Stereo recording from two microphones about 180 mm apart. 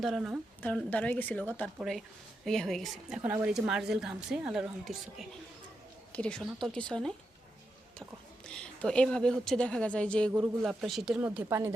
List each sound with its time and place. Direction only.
0.0 s a woman's voice: centre (ahead or behind)
8.4 s a woman's voice: 5° left (ahead or behind)
11.4 s speech: 15° right (ahead or behind)